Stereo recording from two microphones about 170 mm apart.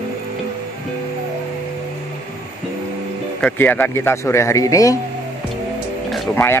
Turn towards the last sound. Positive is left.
turn(degrees=0)  # may be behind; listen again after turning